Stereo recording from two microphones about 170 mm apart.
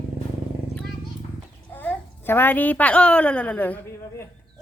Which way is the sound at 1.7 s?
10° left (ahead or behind).